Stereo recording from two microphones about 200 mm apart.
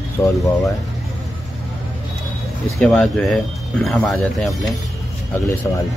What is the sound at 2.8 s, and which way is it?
Speech, 5° left (ahead or behind).